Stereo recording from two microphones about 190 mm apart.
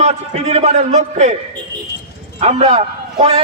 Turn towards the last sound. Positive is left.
turn(degrees=-35)  # may be behind; listen again after turning